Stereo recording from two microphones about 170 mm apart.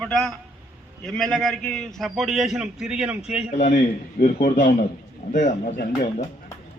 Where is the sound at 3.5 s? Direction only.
45° left (ahead or behind).